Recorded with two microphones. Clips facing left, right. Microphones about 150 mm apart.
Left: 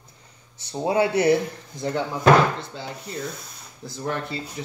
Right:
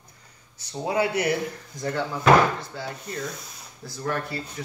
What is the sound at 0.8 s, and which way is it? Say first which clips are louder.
Speech: left 5 dB; 25° left (ahead or behind).